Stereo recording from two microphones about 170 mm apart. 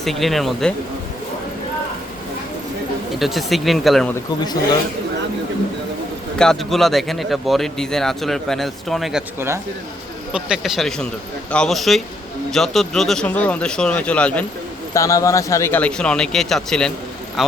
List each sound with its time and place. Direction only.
0.0 s speech: centre (ahead or behind)
3.2 s speech: centre (ahead or behind)
6.4 s speech: centre (ahead or behind)
10.3 s speech: 5° right (ahead or behind)
14.9 s speech: 20° left (ahead or behind); by 16.9 s 5° left (ahead or behind)